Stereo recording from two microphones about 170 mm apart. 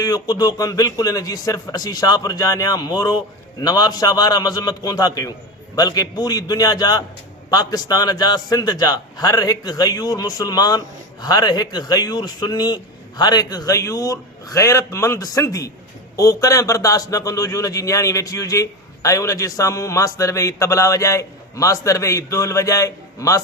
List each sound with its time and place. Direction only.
0.0 s a man's voice: 20° left (ahead or behind)